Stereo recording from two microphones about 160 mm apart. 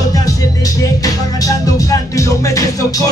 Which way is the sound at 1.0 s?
20° left (ahead or behind).